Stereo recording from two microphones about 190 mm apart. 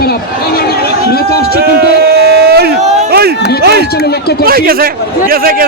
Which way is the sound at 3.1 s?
55° right (ahead or behind).